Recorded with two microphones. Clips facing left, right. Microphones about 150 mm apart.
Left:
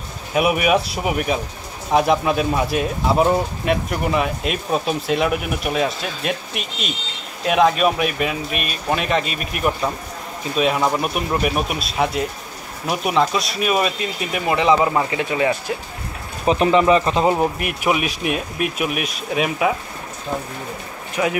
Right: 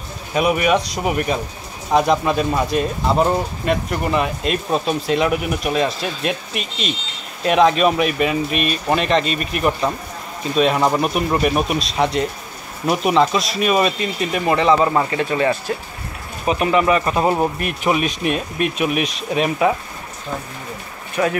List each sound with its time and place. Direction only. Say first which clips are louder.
0.3 s speech: even; 5° left (ahead or behind)
16.4 s speech: left 2 dB; 30° left (ahead or behind)
17.3 s speech: even; 10° left (ahead or behind)
21.2 s speech: right 2 dB; 10° left (ahead or behind)